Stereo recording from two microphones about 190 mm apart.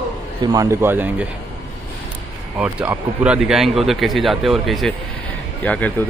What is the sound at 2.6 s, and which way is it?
Speech, 10° right (ahead or behind).